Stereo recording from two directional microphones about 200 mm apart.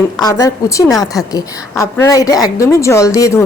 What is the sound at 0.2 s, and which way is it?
Speech, 15° left (ahead or behind).